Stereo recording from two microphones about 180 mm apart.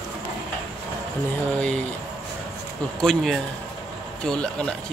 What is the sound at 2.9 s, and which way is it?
Speech, centre (ahead or behind).